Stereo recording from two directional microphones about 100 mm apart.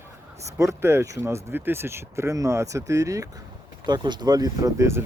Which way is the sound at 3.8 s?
50° right (ahead or behind).